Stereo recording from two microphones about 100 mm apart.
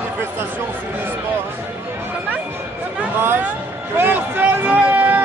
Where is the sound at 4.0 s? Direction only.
20° right (ahead or behind).